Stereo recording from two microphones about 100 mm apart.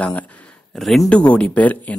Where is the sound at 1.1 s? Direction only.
10° left (ahead or behind).